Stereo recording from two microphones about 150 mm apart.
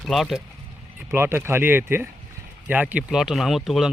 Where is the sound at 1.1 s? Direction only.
15° right (ahead or behind).